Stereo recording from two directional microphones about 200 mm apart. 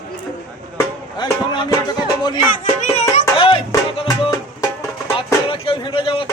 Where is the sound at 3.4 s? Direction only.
25° left (ahead or behind).